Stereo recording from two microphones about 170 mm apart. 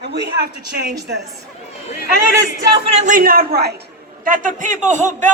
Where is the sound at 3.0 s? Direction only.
55° right (ahead or behind).